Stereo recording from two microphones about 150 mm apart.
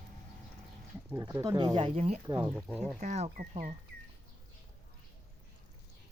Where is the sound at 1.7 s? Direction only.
40° right (ahead or behind).